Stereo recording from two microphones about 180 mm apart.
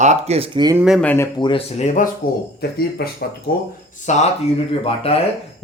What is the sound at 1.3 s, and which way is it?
Speech, 25° left (ahead or behind).